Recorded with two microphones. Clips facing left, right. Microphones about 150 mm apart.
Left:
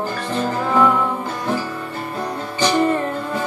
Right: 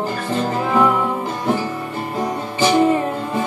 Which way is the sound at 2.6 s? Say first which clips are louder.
Right 3 dB; 5° right (ahead or behind).